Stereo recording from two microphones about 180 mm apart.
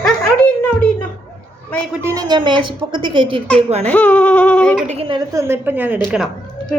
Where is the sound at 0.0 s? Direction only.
5° left (ahead or behind).